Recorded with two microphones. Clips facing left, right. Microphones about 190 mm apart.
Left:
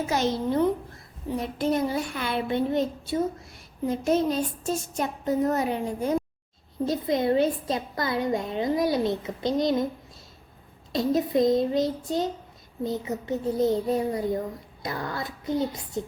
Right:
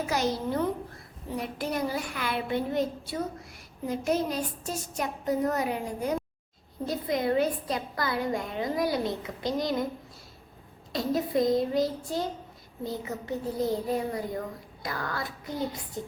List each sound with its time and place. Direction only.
0.1 s a woman's voice: 25° left (ahead or behind)
10.9 s a woman's voice: 20° left (ahead or behind)